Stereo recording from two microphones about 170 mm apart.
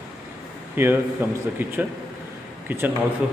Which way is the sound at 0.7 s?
15° right (ahead or behind).